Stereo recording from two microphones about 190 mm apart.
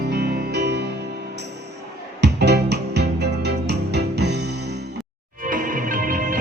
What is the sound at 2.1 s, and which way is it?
Music, 60° right (ahead or behind).